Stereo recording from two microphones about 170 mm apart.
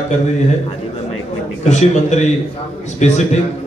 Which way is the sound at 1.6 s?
45° left (ahead or behind).